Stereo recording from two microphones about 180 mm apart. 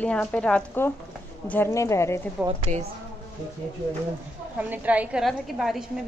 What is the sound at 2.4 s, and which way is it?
Speech, 5° right (ahead or behind).